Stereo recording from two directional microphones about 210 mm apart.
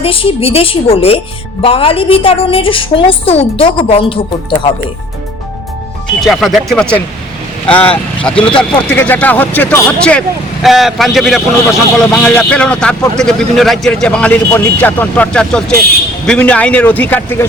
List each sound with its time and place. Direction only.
0.0 s a woman's voice: 25° left (ahead or behind)
6.1 s a man's voice: centre (ahead or behind)